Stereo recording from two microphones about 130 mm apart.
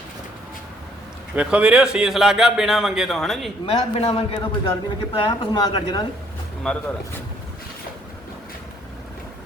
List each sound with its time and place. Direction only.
1.4 s speech: 10° right (ahead or behind)
3.7 s a man's voice: 55° left (ahead or behind); by 6.1 s 30° left (ahead or behind)
6.7 s speech: 5° left (ahead or behind)